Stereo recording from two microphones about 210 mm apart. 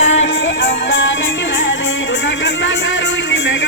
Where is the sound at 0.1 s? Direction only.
60° left (ahead or behind).